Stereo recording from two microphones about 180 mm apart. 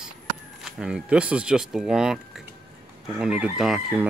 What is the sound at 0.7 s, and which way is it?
Speech, 5° right (ahead or behind).